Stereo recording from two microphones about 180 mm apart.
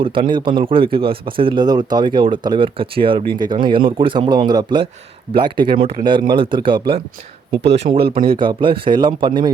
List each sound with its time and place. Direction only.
0.0 s a man's voice: 30° right (ahead or behind)
7.9 s speech: 60° right (ahead or behind)
8.4 s a man's voice: 30° right (ahead or behind)